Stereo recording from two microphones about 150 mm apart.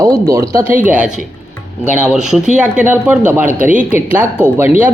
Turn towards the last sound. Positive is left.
turn(degrees=-15)  # may be behind; listen again after turning